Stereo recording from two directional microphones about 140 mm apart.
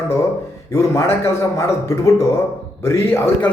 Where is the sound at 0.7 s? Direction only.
20° left (ahead or behind).